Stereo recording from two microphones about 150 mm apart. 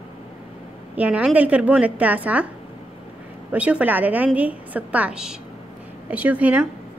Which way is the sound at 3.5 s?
10° right (ahead or behind).